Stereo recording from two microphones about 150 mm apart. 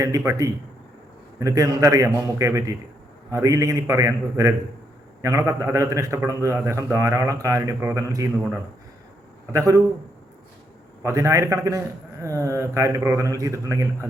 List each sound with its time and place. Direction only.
0.3 s a man's voice: 20° right (ahead or behind)
9.5 s a man's voice: 20° right (ahead or behind)
11.0 s a man's voice: 20° right (ahead or behind)